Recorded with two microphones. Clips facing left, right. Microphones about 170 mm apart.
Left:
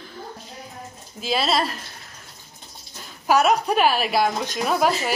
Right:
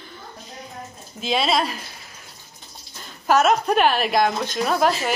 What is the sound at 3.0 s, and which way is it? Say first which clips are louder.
A woman's voice: right 1 dB; 5° left (ahead or behind).